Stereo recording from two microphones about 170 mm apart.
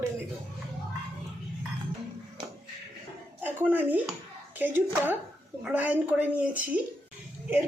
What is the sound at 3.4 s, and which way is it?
Speech, 10° right (ahead or behind).